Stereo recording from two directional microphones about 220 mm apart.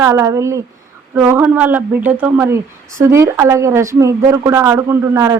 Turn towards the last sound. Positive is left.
turn(degrees=-15)  # may be behind; listen again after turning